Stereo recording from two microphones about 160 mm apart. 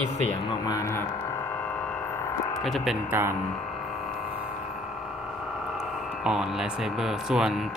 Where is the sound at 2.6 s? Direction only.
Centre (ahead or behind).